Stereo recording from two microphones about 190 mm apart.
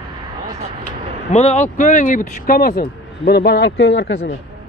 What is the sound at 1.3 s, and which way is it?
Speech, 35° left (ahead or behind).